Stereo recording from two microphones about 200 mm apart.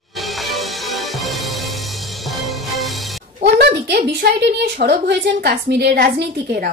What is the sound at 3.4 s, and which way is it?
A woman's voice, 55° right (ahead or behind).